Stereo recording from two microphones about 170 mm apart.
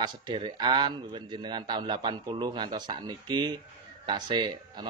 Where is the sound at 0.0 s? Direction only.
25° right (ahead or behind).